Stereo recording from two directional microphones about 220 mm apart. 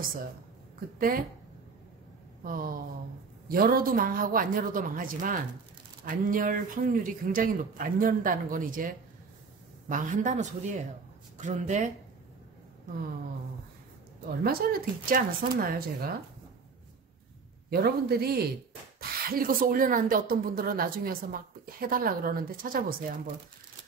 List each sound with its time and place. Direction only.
0.9 s speech: 40° right (ahead or behind)
2.4 s speech: 40° right (ahead or behind)
14.4 s speech: 40° right (ahead or behind)
17.6 s speech: 45° right (ahead or behind)